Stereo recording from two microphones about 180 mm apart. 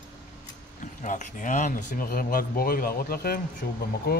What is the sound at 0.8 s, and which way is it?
Speech, 45° left (ahead or behind).